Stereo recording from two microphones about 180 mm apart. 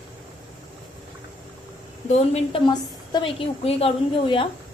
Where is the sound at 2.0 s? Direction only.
35° left (ahead or behind).